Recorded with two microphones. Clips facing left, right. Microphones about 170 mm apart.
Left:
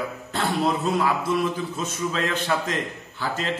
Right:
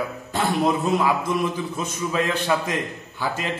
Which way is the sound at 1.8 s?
10° right (ahead or behind).